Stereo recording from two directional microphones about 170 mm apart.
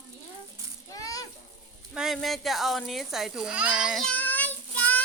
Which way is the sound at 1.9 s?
Centre (ahead or behind).